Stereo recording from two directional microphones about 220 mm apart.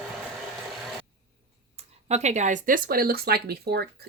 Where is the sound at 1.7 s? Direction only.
30° right (ahead or behind).